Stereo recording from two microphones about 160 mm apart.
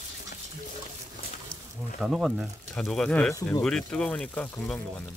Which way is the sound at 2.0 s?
5° right (ahead or behind).